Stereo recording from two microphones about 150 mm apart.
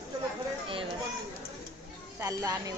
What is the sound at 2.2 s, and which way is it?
Speech, 25° right (ahead or behind).